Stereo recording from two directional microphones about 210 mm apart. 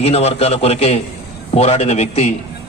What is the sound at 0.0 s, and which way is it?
A man's voice, 30° left (ahead or behind).